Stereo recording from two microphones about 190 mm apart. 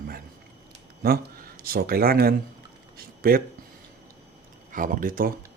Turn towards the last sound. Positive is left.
turn(degrees=-45)  # may be behind; listen again after turning